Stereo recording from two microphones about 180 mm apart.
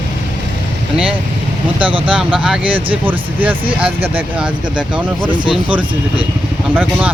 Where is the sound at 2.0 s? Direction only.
5° right (ahead or behind).